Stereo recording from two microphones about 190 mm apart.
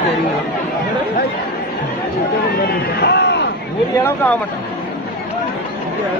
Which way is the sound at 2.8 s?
55° left (ahead or behind).